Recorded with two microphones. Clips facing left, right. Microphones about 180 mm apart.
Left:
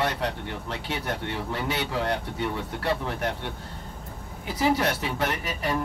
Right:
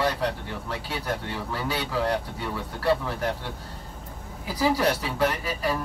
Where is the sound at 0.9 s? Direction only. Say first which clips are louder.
Left 1 dB; 25° left (ahead or behind).